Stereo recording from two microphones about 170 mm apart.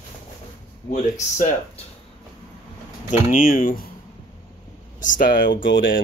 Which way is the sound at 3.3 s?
55° left (ahead or behind).